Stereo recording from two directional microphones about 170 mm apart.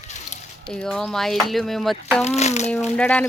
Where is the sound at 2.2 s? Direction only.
40° left (ahead or behind).